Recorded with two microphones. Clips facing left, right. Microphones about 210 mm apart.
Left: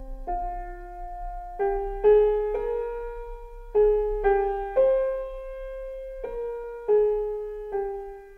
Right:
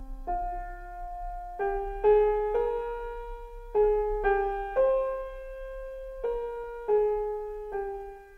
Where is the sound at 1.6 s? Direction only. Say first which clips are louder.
Left 4 dB; 20° left (ahead or behind).